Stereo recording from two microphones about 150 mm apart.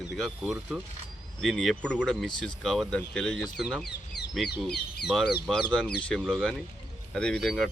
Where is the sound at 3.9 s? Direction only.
90° left.